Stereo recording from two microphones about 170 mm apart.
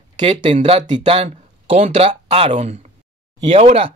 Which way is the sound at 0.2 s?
30° right (ahead or behind).